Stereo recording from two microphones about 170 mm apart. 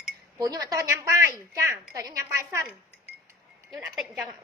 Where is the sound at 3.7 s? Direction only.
Centre (ahead or behind).